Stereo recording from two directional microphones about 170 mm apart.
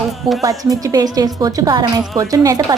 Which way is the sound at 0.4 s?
20° right (ahead or behind).